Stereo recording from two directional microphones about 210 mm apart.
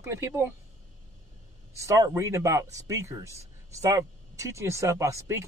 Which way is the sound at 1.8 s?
15° right (ahead or behind).